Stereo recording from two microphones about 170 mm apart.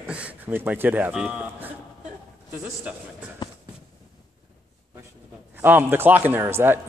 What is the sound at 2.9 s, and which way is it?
Speech, 10° right (ahead or behind).